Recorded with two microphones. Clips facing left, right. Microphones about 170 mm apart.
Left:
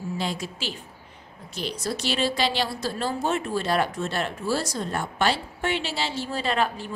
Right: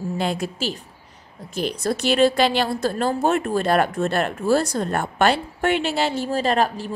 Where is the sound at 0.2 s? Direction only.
55° right (ahead or behind).